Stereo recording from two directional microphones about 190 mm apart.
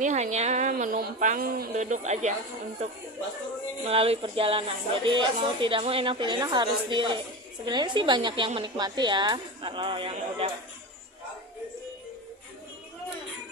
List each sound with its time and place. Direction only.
0.0 s speech: 40° right (ahead or behind)